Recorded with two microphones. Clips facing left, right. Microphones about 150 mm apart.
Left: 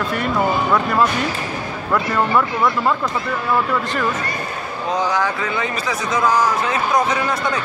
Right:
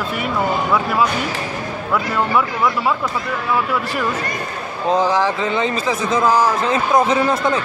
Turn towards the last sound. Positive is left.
turn(degrees=-25)  # may be behind; listen again after turning